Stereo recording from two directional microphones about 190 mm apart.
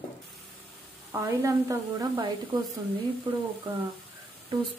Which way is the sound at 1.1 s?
15° right (ahead or behind).